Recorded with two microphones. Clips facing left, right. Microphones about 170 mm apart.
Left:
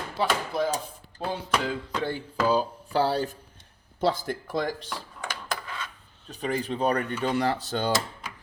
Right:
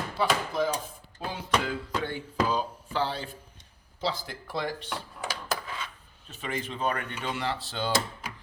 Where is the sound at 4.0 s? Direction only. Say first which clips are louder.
Left 7 dB; 50° left (ahead or behind).